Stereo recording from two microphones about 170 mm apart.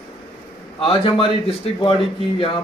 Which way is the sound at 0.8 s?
30° left (ahead or behind).